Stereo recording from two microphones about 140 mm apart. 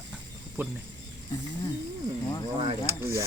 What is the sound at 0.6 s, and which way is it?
Speech, 15° right (ahead or behind).